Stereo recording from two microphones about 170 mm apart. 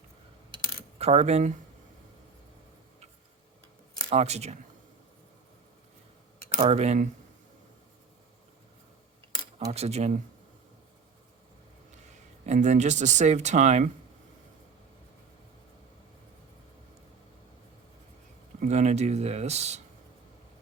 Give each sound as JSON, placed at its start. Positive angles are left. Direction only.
{"t": 0.9, "sound": "speech", "side_deg": -40}
{"t": 4.1, "sound": "speech", "side_deg": -40}
{"t": 6.5, "sound": "speech", "side_deg": -35}
{"t": 9.7, "sound": "speech", "side_deg": -40}
{"t": 12.5, "sound": "speech", "side_deg": -45}
{"t": 18.6, "sound": "speech", "side_deg": -45}